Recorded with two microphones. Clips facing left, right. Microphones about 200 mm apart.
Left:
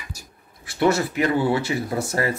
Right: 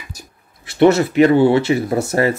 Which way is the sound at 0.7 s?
20° right (ahead or behind).